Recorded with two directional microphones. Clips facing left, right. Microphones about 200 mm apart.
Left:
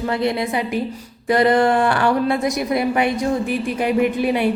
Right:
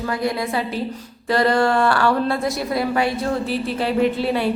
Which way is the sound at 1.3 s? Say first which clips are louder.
Left 2 dB; 20° left (ahead or behind).